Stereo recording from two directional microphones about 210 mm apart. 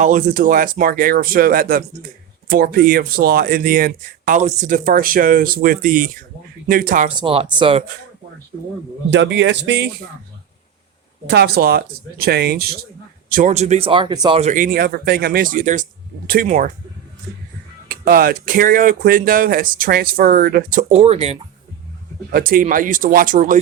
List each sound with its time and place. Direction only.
0.0 s speech: 40° right (ahead or behind)
7.2 s speech: 25° right (ahead or behind)
9.0 s speech: 60° right (ahead or behind)
11.3 s speech: 50° right (ahead or behind)
13.3 s speech: 35° right (ahead or behind)
14.5 s speech: 40° right (ahead or behind)
17.8 s speech: 45° right (ahead or behind)
20.9 s speech: 30° right (ahead or behind)
22.3 s speech: 45° right (ahead or behind)